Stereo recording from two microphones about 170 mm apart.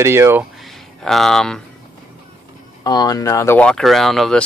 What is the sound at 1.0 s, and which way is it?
Speech, centre (ahead or behind).